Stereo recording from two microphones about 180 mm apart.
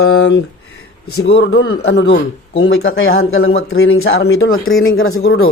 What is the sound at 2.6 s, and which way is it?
Speech, 90° left.